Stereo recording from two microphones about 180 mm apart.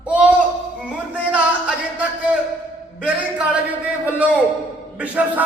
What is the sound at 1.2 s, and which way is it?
Music, 5° right (ahead or behind).